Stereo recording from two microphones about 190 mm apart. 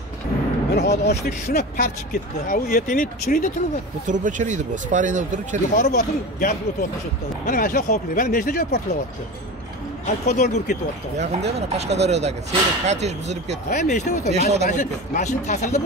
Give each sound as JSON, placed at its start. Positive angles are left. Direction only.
{"t": 0.7, "sound": "speech", "side_deg": 60}
{"t": 4.1, "sound": "speech", "side_deg": -40}
{"t": 5.8, "sound": "speech", "side_deg": 50}
{"t": 10.0, "sound": "speech", "side_deg": 40}
{"t": 11.1, "sound": "speech", "side_deg": -35}
{"t": 13.7, "sound": "speech", "side_deg": 40}
{"t": 14.3, "sound": "speech", "side_deg": -35}
{"t": 14.7, "sound": "speech", "side_deg": 40}